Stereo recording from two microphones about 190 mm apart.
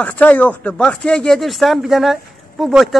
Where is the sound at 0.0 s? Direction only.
10° left (ahead or behind).